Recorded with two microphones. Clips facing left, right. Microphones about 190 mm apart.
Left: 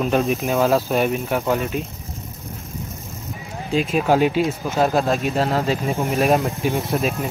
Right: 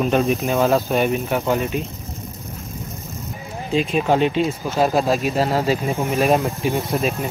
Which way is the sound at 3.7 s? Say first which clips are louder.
Even; centre (ahead or behind).